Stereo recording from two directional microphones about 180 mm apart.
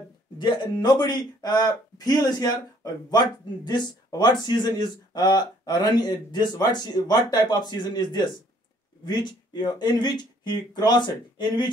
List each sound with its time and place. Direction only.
0.4 s speech: 25° left (ahead or behind)